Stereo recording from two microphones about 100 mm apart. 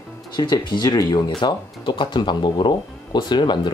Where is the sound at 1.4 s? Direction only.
55° left (ahead or behind).